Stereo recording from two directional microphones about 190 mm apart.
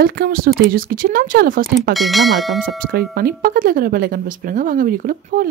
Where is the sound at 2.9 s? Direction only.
50° right (ahead or behind).